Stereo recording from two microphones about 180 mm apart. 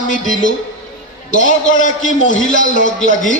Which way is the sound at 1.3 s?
45° left (ahead or behind).